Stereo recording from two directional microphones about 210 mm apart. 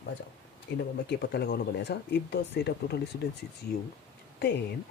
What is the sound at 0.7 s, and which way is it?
Speech, 60° left (ahead or behind).